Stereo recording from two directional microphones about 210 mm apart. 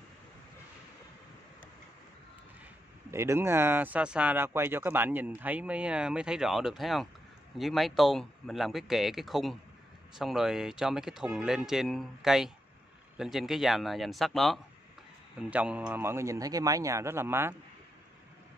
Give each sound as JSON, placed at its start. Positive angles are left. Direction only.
{"t": 3.1, "sound": "speech", "side_deg": -10}